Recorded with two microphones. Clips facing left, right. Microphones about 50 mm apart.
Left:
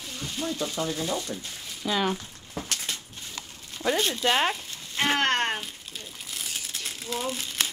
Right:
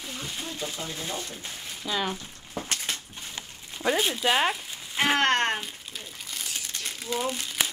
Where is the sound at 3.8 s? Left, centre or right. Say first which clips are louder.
Even; centre.